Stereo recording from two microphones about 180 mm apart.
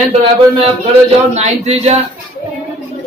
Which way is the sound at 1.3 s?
40° right (ahead or behind).